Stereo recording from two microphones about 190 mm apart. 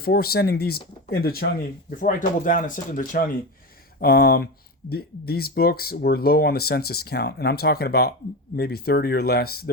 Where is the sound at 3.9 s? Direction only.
55° left (ahead or behind).